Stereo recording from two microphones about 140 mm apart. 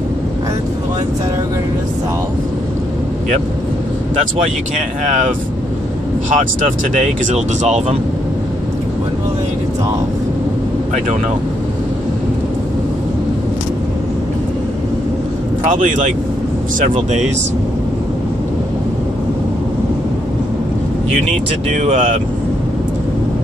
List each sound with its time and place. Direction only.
4.7 s speech: 60° right (ahead or behind)
6.3 s speech: 60° right (ahead or behind)
15.6 s speech: 70° right (ahead or behind)
21.6 s speech: 60° right (ahead or behind)